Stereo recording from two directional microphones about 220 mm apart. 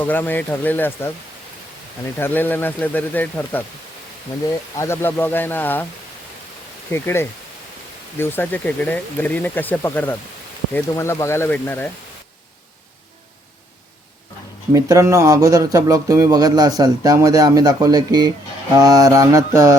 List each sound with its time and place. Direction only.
0.0 s speech: 10° left (ahead or behind)
2.1 s speech: 10° left (ahead or behind)
4.8 s speech: 10° left (ahead or behind)
6.9 s speech: 10° left (ahead or behind)
14.7 s speech: 15° right (ahead or behind)